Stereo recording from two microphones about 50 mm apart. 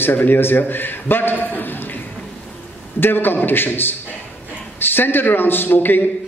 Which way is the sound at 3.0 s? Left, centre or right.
Left.